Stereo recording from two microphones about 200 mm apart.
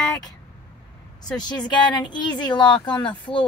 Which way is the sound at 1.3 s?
20° left (ahead or behind).